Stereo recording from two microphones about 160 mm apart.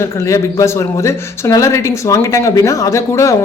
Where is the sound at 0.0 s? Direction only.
20° left (ahead or behind).